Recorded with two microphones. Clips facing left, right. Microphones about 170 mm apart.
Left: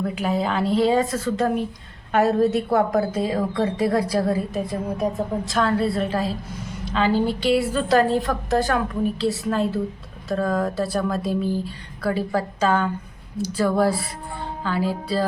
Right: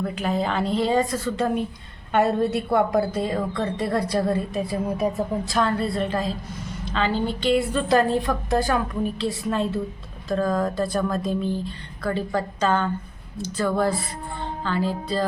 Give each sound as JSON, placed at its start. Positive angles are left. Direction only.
{"t": 0.0, "sound": "a woman's voice", "side_deg": 5}